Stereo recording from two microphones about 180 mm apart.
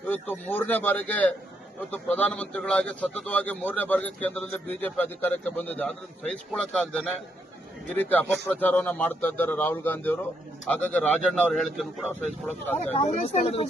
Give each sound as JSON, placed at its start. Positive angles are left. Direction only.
{"t": 0.1, "sound": "a man's voice", "side_deg": 10}
{"t": 12.9, "sound": "speech", "side_deg": 35}